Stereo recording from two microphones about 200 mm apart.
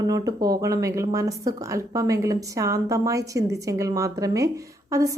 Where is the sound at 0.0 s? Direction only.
20° right (ahead or behind).